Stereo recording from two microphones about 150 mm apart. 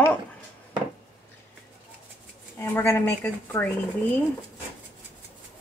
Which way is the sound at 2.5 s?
15° left (ahead or behind).